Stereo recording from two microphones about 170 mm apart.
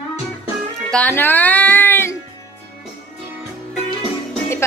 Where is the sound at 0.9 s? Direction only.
10° left (ahead or behind).